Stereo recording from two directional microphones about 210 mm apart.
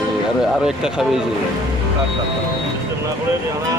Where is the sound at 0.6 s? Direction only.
5° right (ahead or behind).